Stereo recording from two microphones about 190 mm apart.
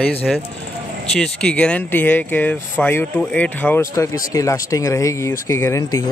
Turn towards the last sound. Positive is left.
turn(degrees=15)  # may be behind; listen again after turning